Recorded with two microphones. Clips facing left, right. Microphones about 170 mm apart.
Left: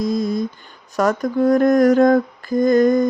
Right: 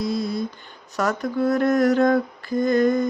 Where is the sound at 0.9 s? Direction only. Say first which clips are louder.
Left 5 dB; 45° left (ahead or behind).